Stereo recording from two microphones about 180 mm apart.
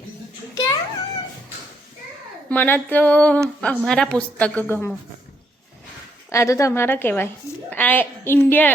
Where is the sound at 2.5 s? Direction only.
10° left (ahead or behind).